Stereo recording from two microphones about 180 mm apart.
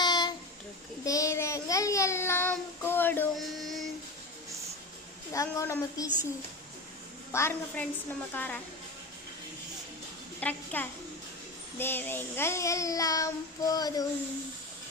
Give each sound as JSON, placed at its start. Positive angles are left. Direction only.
{"t": 0.0, "sound": "a sound", "side_deg": 25}
{"t": 1.0, "sound": "child singing", "side_deg": 20}
{"t": 3.3, "sound": "music", "side_deg": 0}
{"t": 5.3, "sound": "a child's voice", "side_deg": 15}
{"t": 7.3, "sound": "a child's voice", "side_deg": 15}
{"t": 10.4, "sound": "a child's voice", "side_deg": 10}